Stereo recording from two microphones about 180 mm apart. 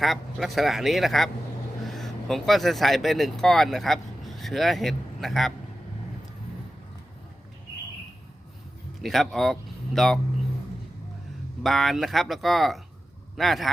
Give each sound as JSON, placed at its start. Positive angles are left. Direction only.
{"t": 0.0, "sound": "speech", "side_deg": 0}
{"t": 9.0, "sound": "speech", "side_deg": 0}
{"t": 11.6, "sound": "speech", "side_deg": 0}